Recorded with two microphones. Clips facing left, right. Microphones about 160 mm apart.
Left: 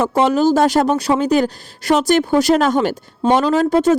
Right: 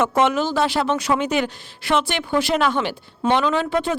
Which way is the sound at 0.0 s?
35° left (ahead or behind).